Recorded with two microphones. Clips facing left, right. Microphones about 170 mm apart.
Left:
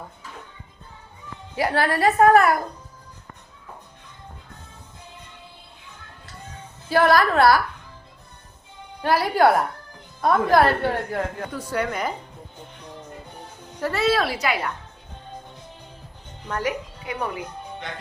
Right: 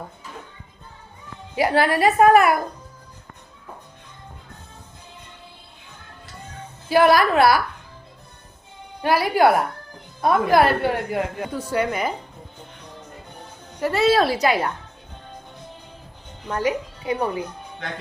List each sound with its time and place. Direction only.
1.5 s a woman's voice: 15° right (ahead or behind)
6.9 s a woman's voice: 10° right (ahead or behind)
9.0 s a woman's voice: 10° right (ahead or behind)
11.5 s a woman's voice: 25° right (ahead or behind)
13.9 s a woman's voice: 35° right (ahead or behind)
16.5 s a woman's voice: 25° right (ahead or behind)